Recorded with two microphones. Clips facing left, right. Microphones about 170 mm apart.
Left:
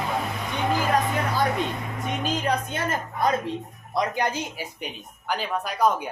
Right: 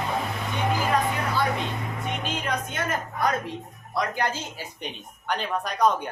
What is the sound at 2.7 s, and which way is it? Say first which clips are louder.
A woman's voice: left 1 dB; 25° left (ahead or behind).